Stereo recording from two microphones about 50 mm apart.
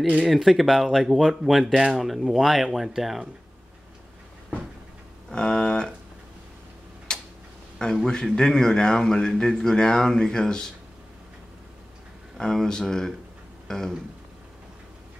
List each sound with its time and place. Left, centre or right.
0.3 s speech: centre
5.3 s a sound: centre
7.1 s tick-tock: centre
8.1 s speech: centre
12.4 s speech: centre